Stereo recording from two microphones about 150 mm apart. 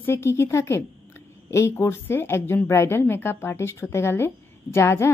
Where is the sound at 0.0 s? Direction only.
15° left (ahead or behind).